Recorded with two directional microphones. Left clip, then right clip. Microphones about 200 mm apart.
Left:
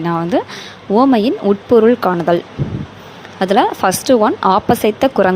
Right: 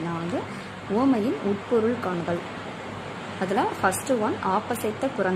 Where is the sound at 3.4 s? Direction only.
40° left (ahead or behind).